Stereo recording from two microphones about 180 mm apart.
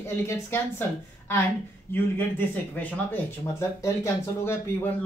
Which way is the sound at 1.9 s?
10° left (ahead or behind).